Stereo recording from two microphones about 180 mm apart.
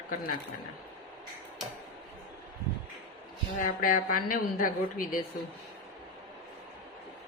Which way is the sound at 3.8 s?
50° left (ahead or behind).